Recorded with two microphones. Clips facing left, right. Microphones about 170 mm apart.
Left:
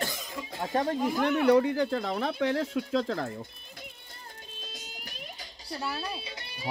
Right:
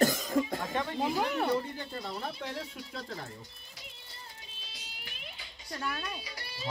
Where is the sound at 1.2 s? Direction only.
75° left (ahead or behind); by 3.3 s 90° left.